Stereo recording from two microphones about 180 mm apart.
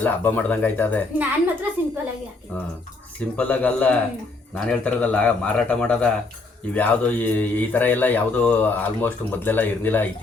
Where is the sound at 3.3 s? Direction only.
10° left (ahead or behind).